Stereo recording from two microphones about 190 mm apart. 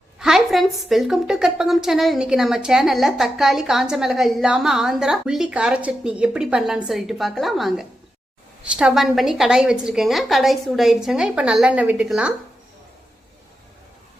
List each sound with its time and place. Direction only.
0.2 s a woman's voice: centre (ahead or behind)